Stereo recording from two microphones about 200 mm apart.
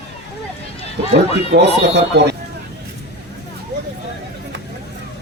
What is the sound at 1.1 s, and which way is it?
Speech, 55° right (ahead or behind).